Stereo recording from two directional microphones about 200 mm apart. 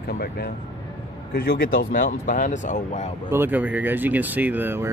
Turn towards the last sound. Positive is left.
turn(degrees=-10)  # may be behind; listen again after turning